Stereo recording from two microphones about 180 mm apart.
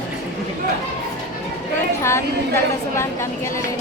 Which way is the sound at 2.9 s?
15° left (ahead or behind).